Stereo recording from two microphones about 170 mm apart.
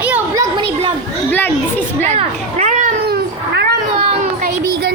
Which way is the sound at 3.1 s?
70° right (ahead or behind).